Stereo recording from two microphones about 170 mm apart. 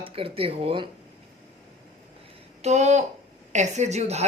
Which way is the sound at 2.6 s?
40° right (ahead or behind).